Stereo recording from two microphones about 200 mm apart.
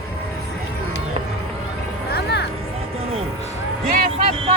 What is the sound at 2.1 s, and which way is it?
Vehicle, 55° left (ahead or behind).